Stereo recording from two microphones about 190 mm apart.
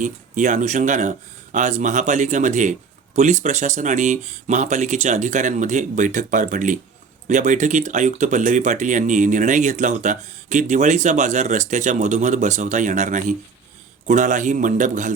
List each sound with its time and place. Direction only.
0.0 s speech: 40° right (ahead or behind)